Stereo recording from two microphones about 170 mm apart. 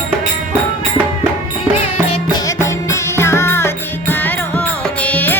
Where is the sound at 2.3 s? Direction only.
15° left (ahead or behind).